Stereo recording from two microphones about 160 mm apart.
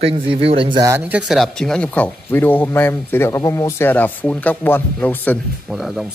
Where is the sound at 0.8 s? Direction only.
10° right (ahead or behind); by 5.4 s 10° left (ahead or behind).